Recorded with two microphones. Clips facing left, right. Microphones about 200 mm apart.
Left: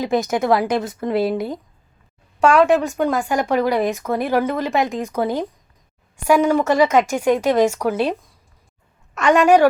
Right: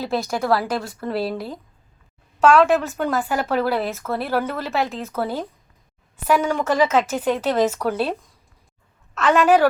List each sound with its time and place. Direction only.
0.0 s a woman's voice: 15° left (ahead or behind)
2.5 s a woman's voice: centre (ahead or behind)
3.3 s speech: 15° left (ahead or behind)
9.1 s a woman's voice: 15° left (ahead or behind)